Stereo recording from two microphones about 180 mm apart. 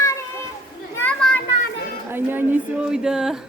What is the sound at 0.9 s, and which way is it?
Children playing, 10° left (ahead or behind).